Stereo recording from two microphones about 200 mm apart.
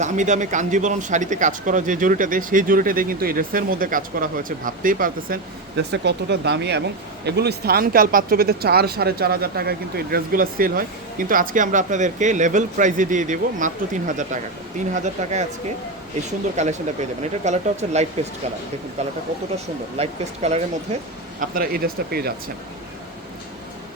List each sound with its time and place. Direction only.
0.0 s speech: 35° right (ahead or behind)
16.6 s speech: 35° right (ahead or behind)
20.0 s speech: 35° right (ahead or behind)
21.4 s speech: 45° right (ahead or behind)